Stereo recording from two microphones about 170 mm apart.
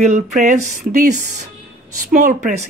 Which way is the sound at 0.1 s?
45° right (ahead or behind).